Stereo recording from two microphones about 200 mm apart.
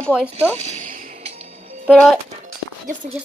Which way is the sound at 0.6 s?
35° right (ahead or behind).